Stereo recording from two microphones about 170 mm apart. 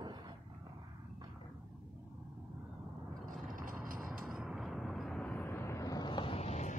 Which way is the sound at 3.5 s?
55° right (ahead or behind).